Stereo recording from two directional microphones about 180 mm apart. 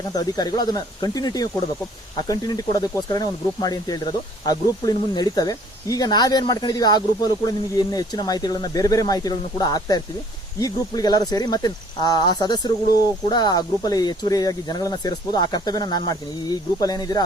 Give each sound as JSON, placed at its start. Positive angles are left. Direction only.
{"t": 0.1, "sound": "speech", "side_deg": 20}